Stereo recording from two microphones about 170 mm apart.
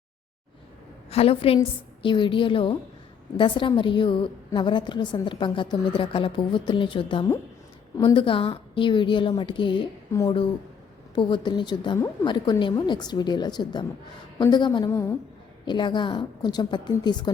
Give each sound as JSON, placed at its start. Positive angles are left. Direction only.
{"t": 1.1, "sound": "a woman's voice", "side_deg": 35}
{"t": 14.8, "sound": "a woman's voice", "side_deg": 15}
{"t": 15.6, "sound": "a woman's voice", "side_deg": 25}